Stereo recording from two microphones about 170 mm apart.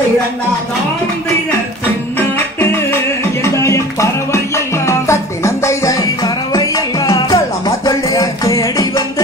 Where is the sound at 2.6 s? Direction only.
15° left (ahead or behind).